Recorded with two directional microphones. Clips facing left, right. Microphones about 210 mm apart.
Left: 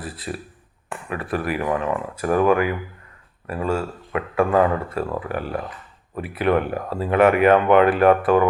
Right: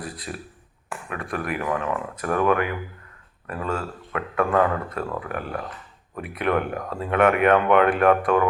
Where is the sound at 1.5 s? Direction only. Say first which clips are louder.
Left 2 dB; 30° left (ahead or behind).